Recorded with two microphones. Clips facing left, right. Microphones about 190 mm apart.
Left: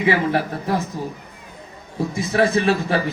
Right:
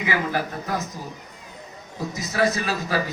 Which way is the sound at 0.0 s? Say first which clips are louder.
Left 6 dB; 30° left (ahead or behind).